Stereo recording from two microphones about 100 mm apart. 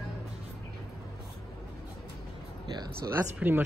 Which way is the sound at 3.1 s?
20° right (ahead or behind).